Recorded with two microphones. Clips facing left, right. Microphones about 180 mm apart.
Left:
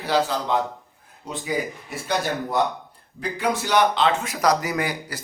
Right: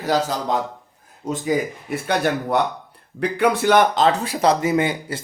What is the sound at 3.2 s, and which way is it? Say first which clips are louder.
Speech: right 6 dB; 60° right (ahead or behind).